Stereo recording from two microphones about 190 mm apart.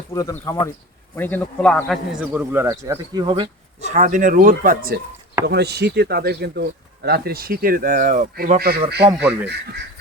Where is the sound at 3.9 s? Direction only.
40° right (ahead or behind).